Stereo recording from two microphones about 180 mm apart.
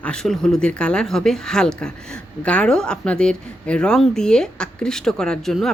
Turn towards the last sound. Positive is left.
turn(degrees=0)  # may be behind; listen again after turning